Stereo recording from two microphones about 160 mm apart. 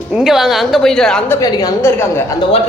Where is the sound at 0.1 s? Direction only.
Centre (ahead or behind).